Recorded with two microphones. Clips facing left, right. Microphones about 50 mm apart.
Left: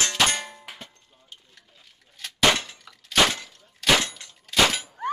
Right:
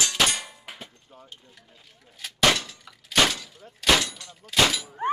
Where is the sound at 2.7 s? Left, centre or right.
Centre.